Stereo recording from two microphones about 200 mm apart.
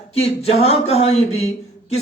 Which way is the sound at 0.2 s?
30° left (ahead or behind).